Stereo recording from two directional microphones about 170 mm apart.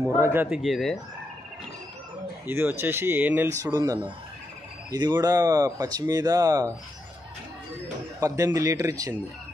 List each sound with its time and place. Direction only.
0.0 s speech: 15° right (ahead or behind)
0.6 s speech: centre (ahead or behind)
2.4 s speech: 15° right (ahead or behind)
3.6 s speech: 20° right (ahead or behind)
8.2 s speech: 20° right (ahead or behind)